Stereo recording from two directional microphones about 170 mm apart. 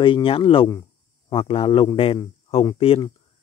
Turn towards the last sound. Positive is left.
turn(degrees=30)  # may be behind; listen again after turning